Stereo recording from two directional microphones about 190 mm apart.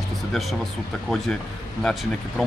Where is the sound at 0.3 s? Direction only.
Centre (ahead or behind).